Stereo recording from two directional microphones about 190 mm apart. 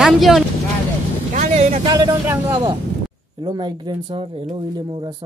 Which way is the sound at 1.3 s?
40° right (ahead or behind).